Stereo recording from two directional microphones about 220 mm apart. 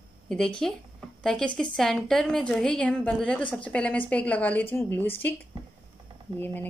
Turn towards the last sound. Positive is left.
turn(degrees=10)  # may be behind; listen again after turning